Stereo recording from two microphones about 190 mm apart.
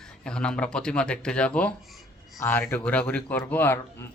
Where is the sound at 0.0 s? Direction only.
5° left (ahead or behind).